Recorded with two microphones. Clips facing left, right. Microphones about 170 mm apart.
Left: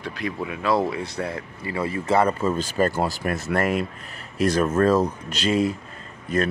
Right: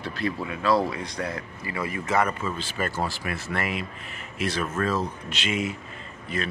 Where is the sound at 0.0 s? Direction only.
15° left (ahead or behind).